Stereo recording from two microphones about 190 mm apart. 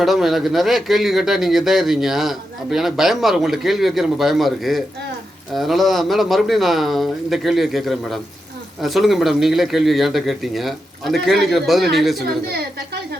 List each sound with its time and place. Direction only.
0.0 s a man's voice: centre (ahead or behind)
12.5 s a woman's voice: 55° right (ahead or behind)